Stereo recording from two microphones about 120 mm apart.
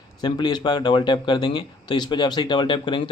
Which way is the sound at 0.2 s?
35° left (ahead or behind).